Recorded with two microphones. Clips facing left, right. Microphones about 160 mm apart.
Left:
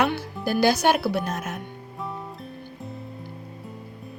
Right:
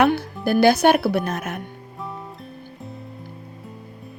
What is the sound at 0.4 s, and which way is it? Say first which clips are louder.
Speech: right 5 dB; 55° right (ahead or behind).